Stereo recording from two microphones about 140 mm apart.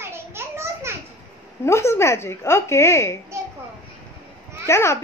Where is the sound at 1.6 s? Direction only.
20° left (ahead or behind).